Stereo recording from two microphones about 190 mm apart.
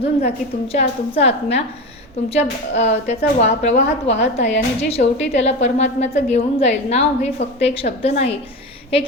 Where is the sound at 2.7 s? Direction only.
35° left (ahead or behind).